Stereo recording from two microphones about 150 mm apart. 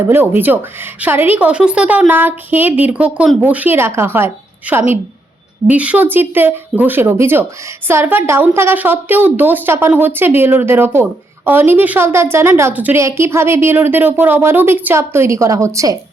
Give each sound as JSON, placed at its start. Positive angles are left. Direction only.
{"t": 0.1, "sound": "a woman's voice", "side_deg": -15}